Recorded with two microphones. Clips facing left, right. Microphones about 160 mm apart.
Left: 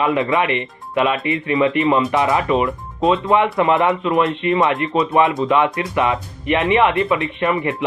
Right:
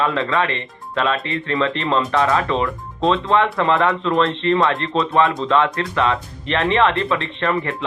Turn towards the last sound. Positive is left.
turn(degrees=20)  # may be behind; listen again after turning